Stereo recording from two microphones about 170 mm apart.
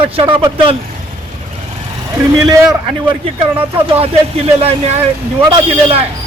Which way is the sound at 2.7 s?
30° right (ahead or behind).